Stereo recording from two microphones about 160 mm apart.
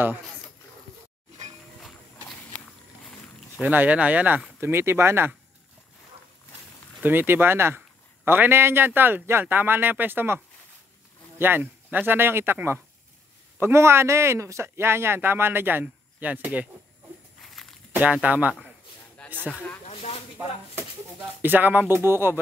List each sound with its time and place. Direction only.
1.8 s clip-clop: centre (ahead or behind)
3.6 s a man's voice: 10° right (ahead or behind)
7.0 s a man's voice: 10° right (ahead or behind)
17.4 s a sound: centre (ahead or behind)
17.9 s a man's voice: 10° right (ahead or behind)
19.1 s speech: 10° left (ahead or behind)
19.9 s a sound: 35° left (ahead or behind)
21.4 s a man's voice: 10° right (ahead or behind)